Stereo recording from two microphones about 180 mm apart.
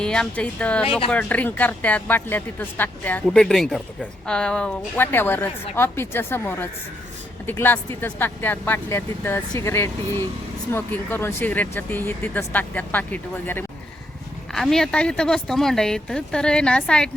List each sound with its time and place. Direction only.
0.0 s a woman's voice: 5° left (ahead or behind)
0.9 s speech: 30° left (ahead or behind)
1.1 s a woman's voice: 10° left (ahead or behind)